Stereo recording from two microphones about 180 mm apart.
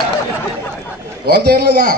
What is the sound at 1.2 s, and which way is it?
Speech, 60° right (ahead or behind).